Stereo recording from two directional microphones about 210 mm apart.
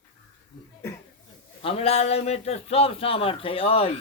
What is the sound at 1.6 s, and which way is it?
A man's voice, 30° left (ahead or behind).